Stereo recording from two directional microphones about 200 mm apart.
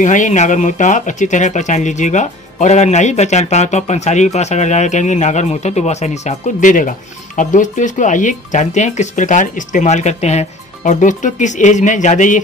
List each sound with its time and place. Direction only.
0.0 s speech: 40° left (ahead or behind)